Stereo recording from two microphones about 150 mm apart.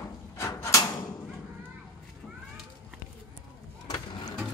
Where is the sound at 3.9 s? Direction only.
25° left (ahead or behind).